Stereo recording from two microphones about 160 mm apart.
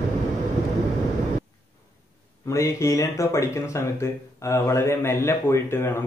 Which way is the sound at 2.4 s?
20° left (ahead or behind).